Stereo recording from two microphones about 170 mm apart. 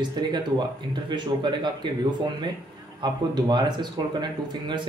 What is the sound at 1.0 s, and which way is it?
Speech, 25° right (ahead or behind).